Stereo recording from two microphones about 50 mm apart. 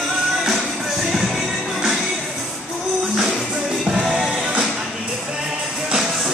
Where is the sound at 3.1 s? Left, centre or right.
Centre.